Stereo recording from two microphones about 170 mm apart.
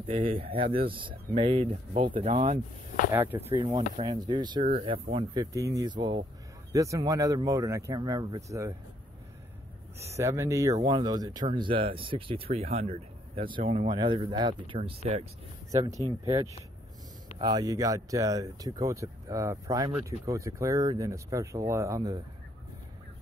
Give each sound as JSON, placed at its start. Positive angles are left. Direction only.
{"t": 0.0, "sound": "speech", "side_deg": -30}
{"t": 3.1, "sound": "speech", "side_deg": -10}
{"t": 3.5, "sound": "speech", "side_deg": -30}
{"t": 9.9, "sound": "speech", "side_deg": -15}
{"t": 15.7, "sound": "speech", "side_deg": -20}
{"t": 17.4, "sound": "speech", "side_deg": -25}